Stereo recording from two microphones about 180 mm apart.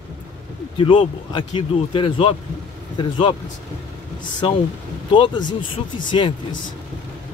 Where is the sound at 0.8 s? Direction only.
30° left (ahead or behind).